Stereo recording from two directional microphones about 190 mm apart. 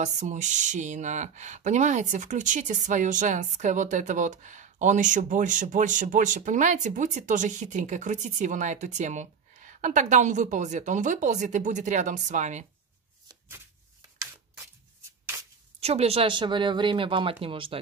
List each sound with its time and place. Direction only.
0.0 s speech: 40° right (ahead or behind)
15.3 s a sound: 15° right (ahead or behind)
15.8 s speech: 35° right (ahead or behind)